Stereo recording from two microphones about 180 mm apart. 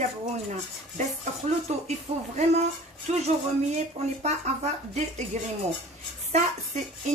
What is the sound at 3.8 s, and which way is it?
Speech, 40° right (ahead or behind).